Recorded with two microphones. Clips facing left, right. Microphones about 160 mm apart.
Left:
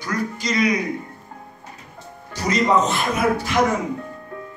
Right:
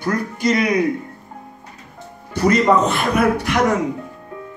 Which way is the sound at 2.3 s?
55° right (ahead or behind).